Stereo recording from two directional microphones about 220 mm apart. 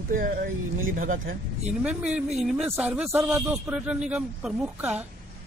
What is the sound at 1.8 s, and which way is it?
A man's voice, 5° right (ahead or behind).